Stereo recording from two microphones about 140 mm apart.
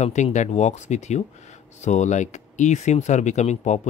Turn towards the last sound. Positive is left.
turn(degrees=55)  # may be behind; listen again after turning